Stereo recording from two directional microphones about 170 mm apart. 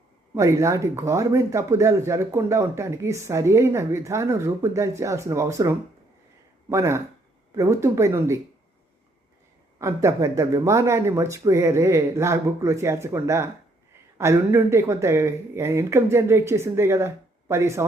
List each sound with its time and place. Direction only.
0.3 s speech: 15° right (ahead or behind)
9.7 s speech: 15° right (ahead or behind)